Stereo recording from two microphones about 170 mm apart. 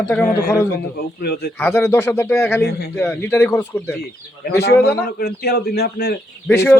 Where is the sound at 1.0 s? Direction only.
65° left (ahead or behind).